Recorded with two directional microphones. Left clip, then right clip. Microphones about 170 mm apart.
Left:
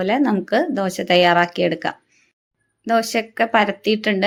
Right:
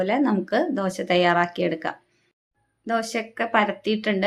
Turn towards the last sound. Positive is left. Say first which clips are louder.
# left 5 dB
turn(degrees=30)  # may be behind; listen again after turning